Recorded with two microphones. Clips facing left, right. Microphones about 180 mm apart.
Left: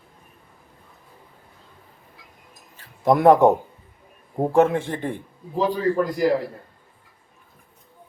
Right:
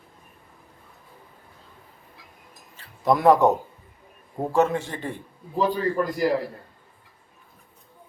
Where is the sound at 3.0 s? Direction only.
55° left (ahead or behind).